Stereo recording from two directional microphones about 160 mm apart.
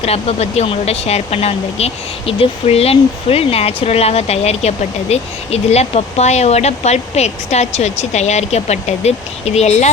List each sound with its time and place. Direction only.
0.0 s speech: 40° left (ahead or behind)